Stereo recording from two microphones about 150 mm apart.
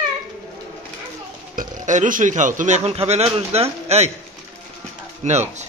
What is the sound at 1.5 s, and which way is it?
Speech, 60° right (ahead or behind).